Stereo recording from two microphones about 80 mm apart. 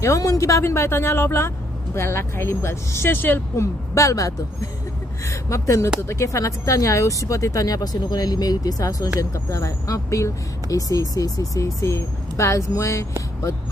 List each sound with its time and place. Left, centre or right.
0.0 s speech: left